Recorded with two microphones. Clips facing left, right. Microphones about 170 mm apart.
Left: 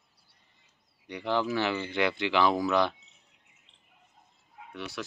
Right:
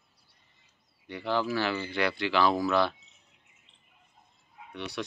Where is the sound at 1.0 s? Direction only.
15° left (ahead or behind).